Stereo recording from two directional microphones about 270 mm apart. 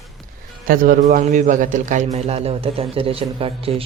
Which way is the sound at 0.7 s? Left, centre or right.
Right.